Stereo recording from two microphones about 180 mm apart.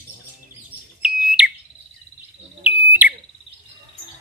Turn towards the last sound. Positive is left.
turn(degrees=-10)  # may be behind; listen again after turning